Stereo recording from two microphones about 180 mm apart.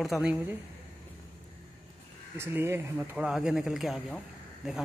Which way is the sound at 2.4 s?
15° right (ahead or behind).